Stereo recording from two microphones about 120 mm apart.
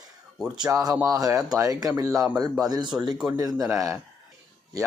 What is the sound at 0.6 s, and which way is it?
Speech, 25° right (ahead or behind).